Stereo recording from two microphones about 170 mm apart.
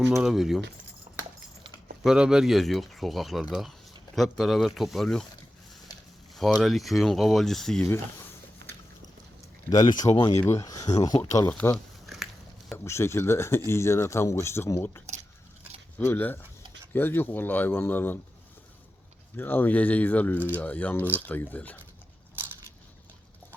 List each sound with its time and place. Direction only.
0.0 s speech: centre (ahead or behind)
2.0 s speech: 5° right (ahead or behind)
6.3 s speech: centre (ahead or behind)
8.6 s biting: 90° right
9.6 s speech: 25° left (ahead or behind)
10.3 s speech: 15° left (ahead or behind)
11.3 s speech: 15° left (ahead or behind)
12.0 s biting: centre (ahead or behind)
12.7 s speech: 15° left (ahead or behind)
19.4 s speech: 10° left (ahead or behind)